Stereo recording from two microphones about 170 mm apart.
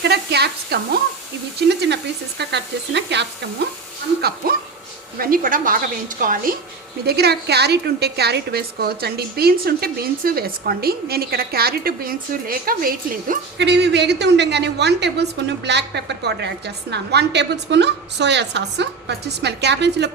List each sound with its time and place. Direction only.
0.0 s a woman's voice: 75° right (ahead or behind)
2.4 s sizzle: 90° right
4.4 s a woman's voice: 60° right (ahead or behind)
7.0 s a woman's voice: 70° right (ahead or behind)
13.6 s a woman's voice: 85° right